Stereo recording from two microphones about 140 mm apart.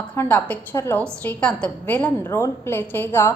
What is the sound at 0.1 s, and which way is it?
A woman's voice, 15° left (ahead or behind).